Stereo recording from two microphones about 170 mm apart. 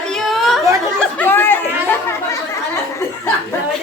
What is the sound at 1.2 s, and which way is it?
Chatter, 15° left (ahead or behind).